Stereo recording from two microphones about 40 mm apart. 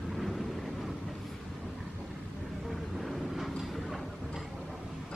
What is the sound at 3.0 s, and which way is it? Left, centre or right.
Vehicle, centre.